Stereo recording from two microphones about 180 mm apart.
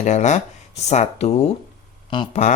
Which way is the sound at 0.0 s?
40° left (ahead or behind).